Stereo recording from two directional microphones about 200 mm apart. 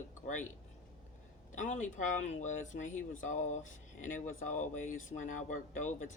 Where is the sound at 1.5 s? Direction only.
40° left (ahead or behind).